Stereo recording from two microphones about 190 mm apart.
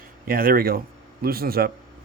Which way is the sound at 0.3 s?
50° right (ahead or behind).